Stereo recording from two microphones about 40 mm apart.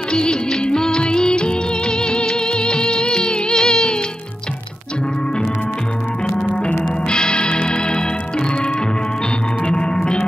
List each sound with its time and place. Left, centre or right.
0.3 s music of bollywood: centre
7.1 s music: left